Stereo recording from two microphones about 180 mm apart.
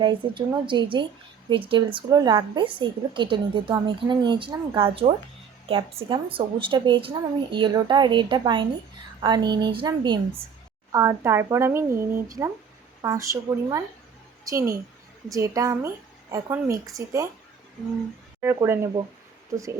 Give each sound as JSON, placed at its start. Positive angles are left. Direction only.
{"t": 0.0, "sound": "a woman's voice", "side_deg": -25}
{"t": 18.3, "sound": "a woman's voice", "side_deg": -15}